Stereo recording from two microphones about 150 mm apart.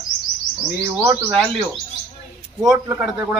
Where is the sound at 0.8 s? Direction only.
15° right (ahead or behind).